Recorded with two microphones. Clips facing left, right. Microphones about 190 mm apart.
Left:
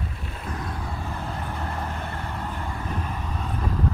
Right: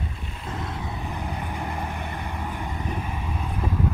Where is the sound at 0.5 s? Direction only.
25° right (ahead or behind).